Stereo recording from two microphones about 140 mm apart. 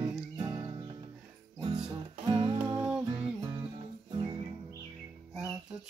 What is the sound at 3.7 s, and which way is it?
Music, 35° right (ahead or behind).